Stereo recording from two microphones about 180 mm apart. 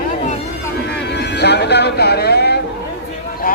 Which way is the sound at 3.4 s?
55° left (ahead or behind).